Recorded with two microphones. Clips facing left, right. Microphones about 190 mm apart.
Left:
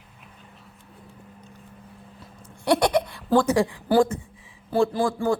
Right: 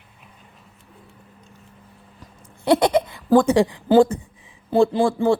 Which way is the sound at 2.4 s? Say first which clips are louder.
Right 3 dB; 20° right (ahead or behind).